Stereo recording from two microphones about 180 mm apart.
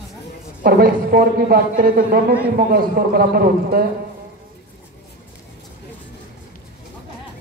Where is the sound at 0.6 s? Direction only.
55° right (ahead or behind).